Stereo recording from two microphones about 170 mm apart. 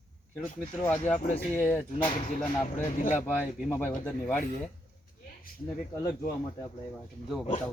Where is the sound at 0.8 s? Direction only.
10° left (ahead or behind).